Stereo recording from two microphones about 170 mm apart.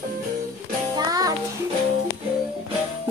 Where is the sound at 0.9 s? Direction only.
20° right (ahead or behind).